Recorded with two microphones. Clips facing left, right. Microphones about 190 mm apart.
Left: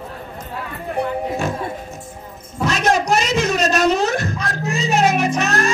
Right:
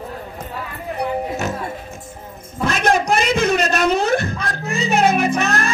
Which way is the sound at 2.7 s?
55° right (ahead or behind).